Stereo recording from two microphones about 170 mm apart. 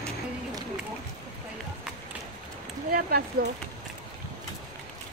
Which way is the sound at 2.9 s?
65° right (ahead or behind).